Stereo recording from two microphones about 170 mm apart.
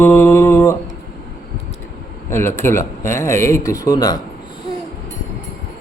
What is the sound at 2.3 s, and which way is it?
Speech, 15° left (ahead or behind).